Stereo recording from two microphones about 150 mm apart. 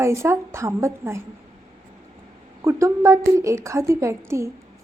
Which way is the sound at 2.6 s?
20° right (ahead or behind).